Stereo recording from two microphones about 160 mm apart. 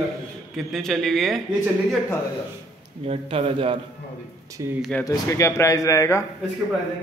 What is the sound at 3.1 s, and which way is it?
Speech, 40° right (ahead or behind).